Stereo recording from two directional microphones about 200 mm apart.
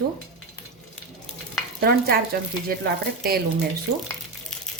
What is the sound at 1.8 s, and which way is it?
Speech, 50° right (ahead or behind).